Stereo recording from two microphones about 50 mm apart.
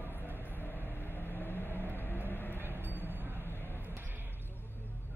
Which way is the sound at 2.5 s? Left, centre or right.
Right.